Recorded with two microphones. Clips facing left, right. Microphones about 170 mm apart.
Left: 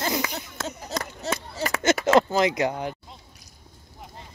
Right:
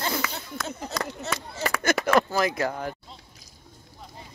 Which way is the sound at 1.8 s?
25° left (ahead or behind).